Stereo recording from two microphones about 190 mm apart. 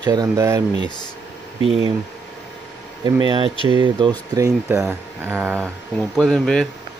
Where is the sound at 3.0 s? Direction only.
25° right (ahead or behind).